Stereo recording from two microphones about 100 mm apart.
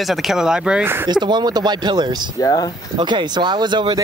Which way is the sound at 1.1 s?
45° right (ahead or behind).